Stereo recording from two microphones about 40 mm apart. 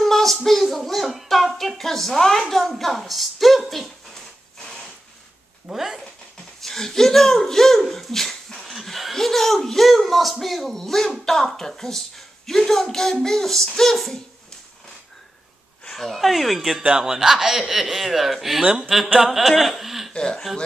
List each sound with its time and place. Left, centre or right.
0.0 s child singing: centre
2.5 s a woman's voice: centre
4.1 s wood: centre
5.7 s speech: centre
6.6 s a sound: centre
10.4 s speech: centre
15.9 s speech: centre
16.8 s speech: centre
20.1 s a sound: centre